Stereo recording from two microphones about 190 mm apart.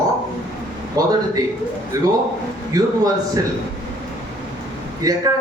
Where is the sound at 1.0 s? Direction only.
20° right (ahead or behind).